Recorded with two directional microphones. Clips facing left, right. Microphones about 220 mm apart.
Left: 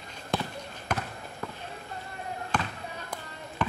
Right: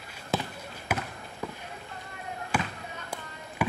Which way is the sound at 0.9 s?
5° right (ahead or behind).